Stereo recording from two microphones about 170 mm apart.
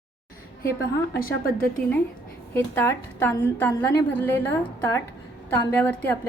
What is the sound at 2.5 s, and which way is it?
A woman's voice, 15° left (ahead or behind).